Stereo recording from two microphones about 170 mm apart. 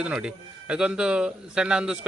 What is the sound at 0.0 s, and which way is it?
A man's voice, 5° right (ahead or behind).